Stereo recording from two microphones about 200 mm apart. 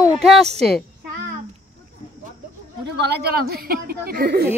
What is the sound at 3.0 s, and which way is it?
A woman's voice, 55° right (ahead or behind).